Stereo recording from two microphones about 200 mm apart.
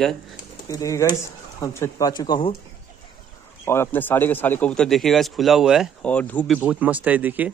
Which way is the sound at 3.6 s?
10° left (ahead or behind).